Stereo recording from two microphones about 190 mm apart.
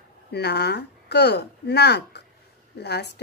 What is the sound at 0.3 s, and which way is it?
A woman's voice, 60° left (ahead or behind).